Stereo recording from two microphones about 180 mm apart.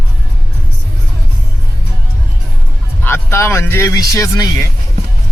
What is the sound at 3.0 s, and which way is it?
Speech, 15° left (ahead or behind).